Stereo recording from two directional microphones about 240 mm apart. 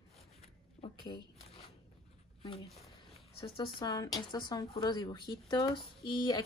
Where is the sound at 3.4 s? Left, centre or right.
Centre.